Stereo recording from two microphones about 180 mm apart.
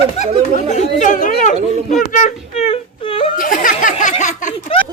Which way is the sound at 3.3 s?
50° left (ahead or behind).